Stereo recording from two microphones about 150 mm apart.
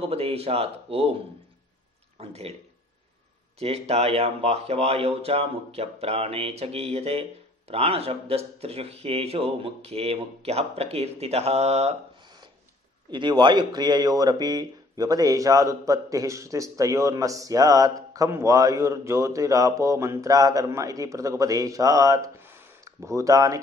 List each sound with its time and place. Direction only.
0.1 s speech: 40° right (ahead or behind)
2.1 s speech: 45° right (ahead or behind)
3.5 s speech: 45° right (ahead or behind)
13.1 s speech: 30° right (ahead or behind)